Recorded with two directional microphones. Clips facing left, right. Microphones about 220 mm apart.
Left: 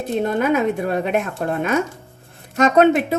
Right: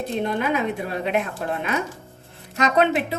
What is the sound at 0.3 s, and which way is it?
A woman's voice, 45° left (ahead or behind).